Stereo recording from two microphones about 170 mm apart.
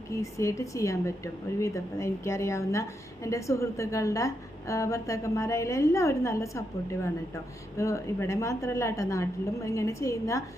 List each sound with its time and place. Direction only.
0.1 s a woman's voice: 20° left (ahead or behind)
7.8 s a woman's voice: 15° left (ahead or behind)